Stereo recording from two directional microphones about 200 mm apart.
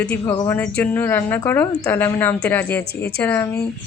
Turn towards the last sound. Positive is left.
turn(degrees=15)  # may be behind; listen again after turning